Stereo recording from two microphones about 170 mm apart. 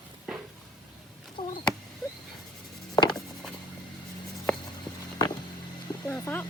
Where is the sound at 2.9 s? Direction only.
25° left (ahead or behind).